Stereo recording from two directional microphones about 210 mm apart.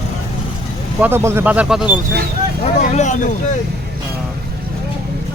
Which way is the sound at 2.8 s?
35° left (ahead or behind).